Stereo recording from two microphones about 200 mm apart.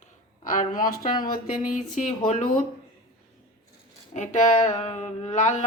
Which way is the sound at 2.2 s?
35° left (ahead or behind).